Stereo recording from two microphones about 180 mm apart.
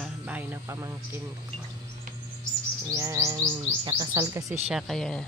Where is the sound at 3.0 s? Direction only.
15° right (ahead or behind).